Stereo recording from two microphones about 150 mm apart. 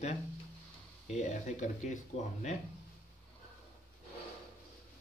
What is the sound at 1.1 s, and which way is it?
Speech, 55° left (ahead or behind).